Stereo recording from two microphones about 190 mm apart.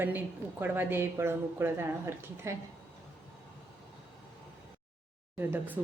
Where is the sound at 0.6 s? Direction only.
10° right (ahead or behind).